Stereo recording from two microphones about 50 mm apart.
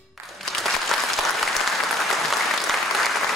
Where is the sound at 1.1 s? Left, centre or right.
Centre.